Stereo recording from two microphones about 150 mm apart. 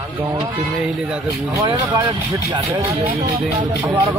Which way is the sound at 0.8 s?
5° right (ahead or behind).